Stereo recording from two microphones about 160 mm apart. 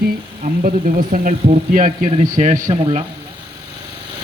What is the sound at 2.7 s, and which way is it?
Speech, 35° right (ahead or behind).